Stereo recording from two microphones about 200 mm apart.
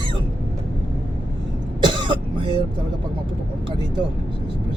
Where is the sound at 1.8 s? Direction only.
25° right (ahead or behind).